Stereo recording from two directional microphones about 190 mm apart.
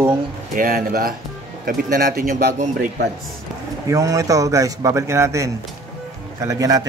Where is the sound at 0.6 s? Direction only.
50° right (ahead or behind).